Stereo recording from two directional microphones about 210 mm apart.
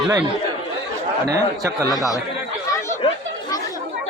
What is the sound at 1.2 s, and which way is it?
Speech, 15° right (ahead or behind).